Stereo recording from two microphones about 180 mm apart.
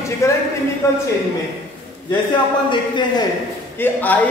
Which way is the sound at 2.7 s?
25° left (ahead or behind).